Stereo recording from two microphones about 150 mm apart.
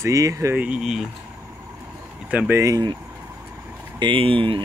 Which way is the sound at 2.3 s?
20° right (ahead or behind).